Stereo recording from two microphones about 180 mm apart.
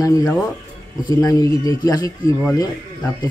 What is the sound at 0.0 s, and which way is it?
A man's voice, 20° left (ahead or behind).